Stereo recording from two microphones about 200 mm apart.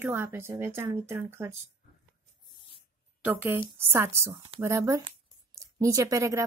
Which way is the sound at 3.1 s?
10° right (ahead or behind).